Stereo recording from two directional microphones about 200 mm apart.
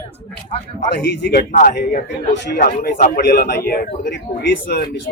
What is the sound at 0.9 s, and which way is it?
Speech, 60° left (ahead or behind).